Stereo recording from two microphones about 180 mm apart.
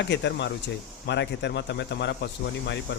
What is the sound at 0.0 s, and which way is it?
Speech, 75° left (ahead or behind).